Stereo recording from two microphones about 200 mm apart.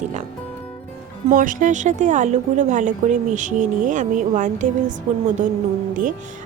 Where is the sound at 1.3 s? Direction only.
40° right (ahead or behind).